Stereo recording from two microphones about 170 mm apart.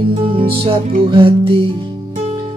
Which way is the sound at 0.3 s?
30° right (ahead or behind).